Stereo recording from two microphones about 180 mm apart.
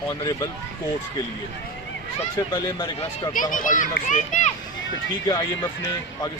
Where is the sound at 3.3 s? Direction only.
50° left (ahead or behind).